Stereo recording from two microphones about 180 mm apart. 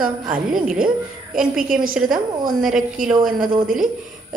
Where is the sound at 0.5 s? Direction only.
5° right (ahead or behind).